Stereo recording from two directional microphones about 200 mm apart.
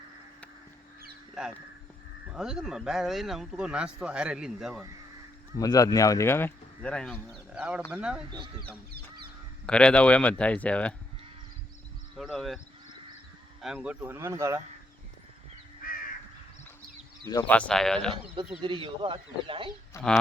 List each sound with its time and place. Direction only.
2.3 s speech: 5° right (ahead or behind)
5.5 s speech: 20° left (ahead or behind); by 8.2 s 5° right (ahead or behind)
9.6 s speech: 5° left (ahead or behind)
12.1 s speech: centre (ahead or behind)
13.6 s speech: 5° right (ahead or behind)
15.8 s crow: 45° left (ahead or behind)
17.2 s speech: 15° left (ahead or behind)
18.6 s speech: 25° right (ahead or behind)